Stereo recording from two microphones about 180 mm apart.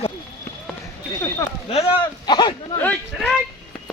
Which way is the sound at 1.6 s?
35° left (ahead or behind).